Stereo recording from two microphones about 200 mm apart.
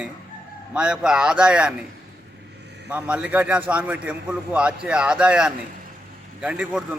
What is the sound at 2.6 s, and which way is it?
Vehicle, 55° right (ahead or behind).